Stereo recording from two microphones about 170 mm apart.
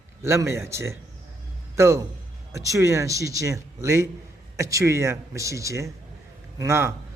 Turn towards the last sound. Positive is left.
turn(degrees=-15)  # may be behind; listen again after turning